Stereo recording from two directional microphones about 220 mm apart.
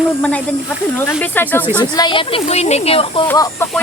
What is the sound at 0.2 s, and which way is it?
Speech, 5° left (ahead or behind).